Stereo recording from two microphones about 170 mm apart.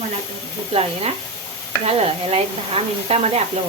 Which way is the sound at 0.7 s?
35° right (ahead or behind).